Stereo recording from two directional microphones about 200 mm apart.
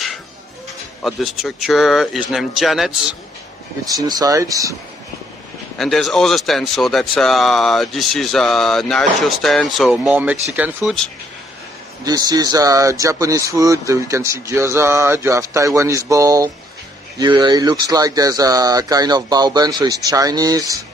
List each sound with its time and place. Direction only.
1.0 s speech: centre (ahead or behind)
3.9 s speech: 20° right (ahead or behind)
5.8 s speech: centre (ahead or behind)
12.0 s speech: 20° right (ahead or behind)